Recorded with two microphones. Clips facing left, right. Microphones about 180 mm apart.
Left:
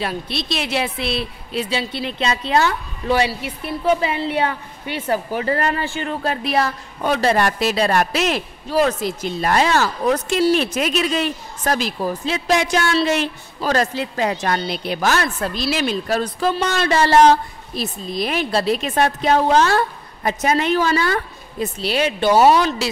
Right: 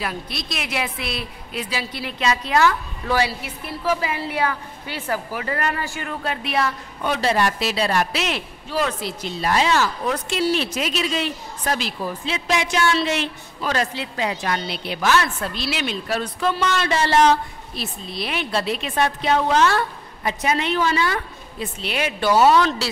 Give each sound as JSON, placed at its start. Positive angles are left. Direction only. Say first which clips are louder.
{"t": 0.0, "sound": "a woman's voice", "louder": "left 4 dB", "side_deg": 30}
{"t": 22.4, "sound": "speech", "louder": "left 1 dB", "side_deg": 15}